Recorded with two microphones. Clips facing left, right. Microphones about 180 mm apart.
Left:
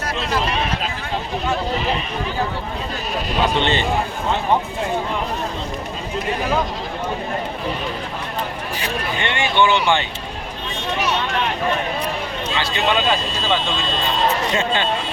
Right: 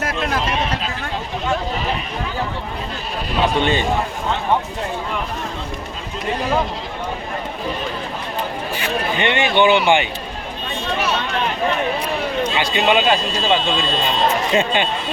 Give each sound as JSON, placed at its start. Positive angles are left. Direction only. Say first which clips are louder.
{"t": 3.6, "sound": "speech", "louder": "right 1 dB", "side_deg": -10}
{"t": 9.1, "sound": "speech", "louder": "right 2 dB", "side_deg": -20}
{"t": 12.5, "sound": "speech", "louder": "right 2 dB", "side_deg": -15}
{"t": 14.5, "sound": "speech", "louder": "right 3 dB", "side_deg": -15}